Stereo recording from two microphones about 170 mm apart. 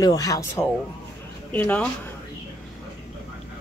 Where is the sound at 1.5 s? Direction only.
10° left (ahead or behind).